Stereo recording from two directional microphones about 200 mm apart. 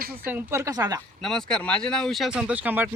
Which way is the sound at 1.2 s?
5° left (ahead or behind).